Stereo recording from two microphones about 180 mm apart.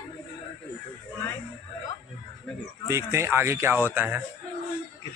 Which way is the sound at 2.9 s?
15° right (ahead or behind).